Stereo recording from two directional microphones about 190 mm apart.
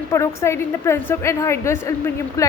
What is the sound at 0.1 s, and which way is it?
Speech, 15° left (ahead or behind).